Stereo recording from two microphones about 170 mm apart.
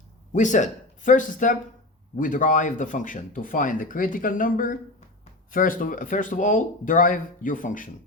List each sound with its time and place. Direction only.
0.3 s speech: 45° left (ahead or behind)